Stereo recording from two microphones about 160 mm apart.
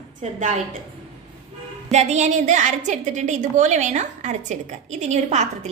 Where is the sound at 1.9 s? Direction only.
45° right (ahead or behind).